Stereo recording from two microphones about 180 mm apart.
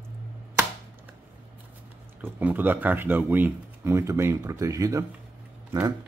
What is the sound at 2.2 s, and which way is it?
Speech, 10° right (ahead or behind).